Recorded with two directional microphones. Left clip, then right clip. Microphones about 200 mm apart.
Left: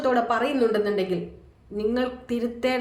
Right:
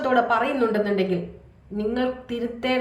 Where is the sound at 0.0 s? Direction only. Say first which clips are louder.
Right 2 dB; 15° left (ahead or behind).